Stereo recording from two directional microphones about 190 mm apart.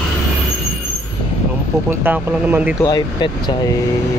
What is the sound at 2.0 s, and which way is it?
Speech, 10° right (ahead or behind).